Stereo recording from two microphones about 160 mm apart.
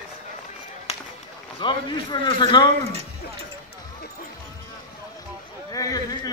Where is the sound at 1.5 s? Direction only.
35° left (ahead or behind).